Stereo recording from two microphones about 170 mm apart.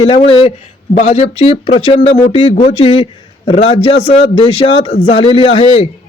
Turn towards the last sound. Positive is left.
turn(degrees=35)  # may be behind; listen again after turning